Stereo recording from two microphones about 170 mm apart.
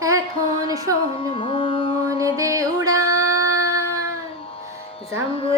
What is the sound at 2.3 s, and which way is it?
Music, 20° right (ahead or behind).